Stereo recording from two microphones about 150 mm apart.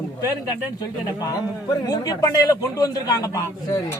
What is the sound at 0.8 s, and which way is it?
A man's voice, 25° left (ahead or behind).